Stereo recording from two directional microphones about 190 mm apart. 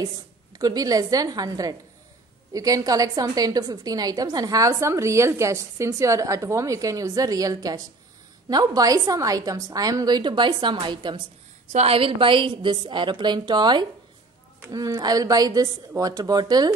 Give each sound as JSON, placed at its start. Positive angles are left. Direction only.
{"t": 0.0, "sound": "a woman's voice", "side_deg": -15}